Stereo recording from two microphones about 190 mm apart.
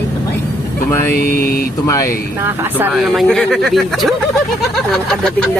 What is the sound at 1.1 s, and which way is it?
Mantra, 50° left (ahead or behind).